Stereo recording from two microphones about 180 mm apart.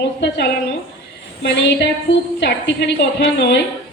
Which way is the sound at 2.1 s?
75° left (ahead or behind).